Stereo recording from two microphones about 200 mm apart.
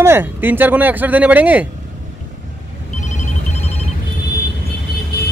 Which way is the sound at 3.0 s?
35° left (ahead or behind).